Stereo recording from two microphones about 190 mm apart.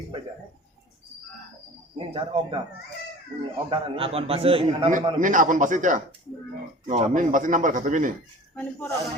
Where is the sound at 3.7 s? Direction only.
30° right (ahead or behind).